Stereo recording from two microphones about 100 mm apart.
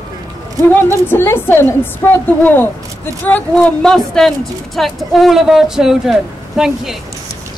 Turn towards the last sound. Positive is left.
turn(degrees=-5)  # may be behind; listen again after turning